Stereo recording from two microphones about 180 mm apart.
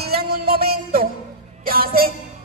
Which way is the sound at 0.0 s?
60° right (ahead or behind).